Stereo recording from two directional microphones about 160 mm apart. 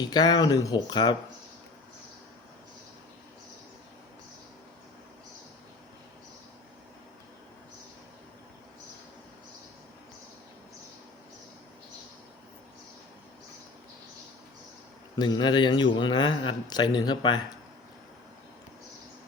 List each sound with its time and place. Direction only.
0.0 s speech: 25° left (ahead or behind)
15.1 s speech: 30° left (ahead or behind)